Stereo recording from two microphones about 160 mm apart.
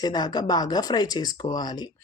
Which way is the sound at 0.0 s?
25° left (ahead or behind).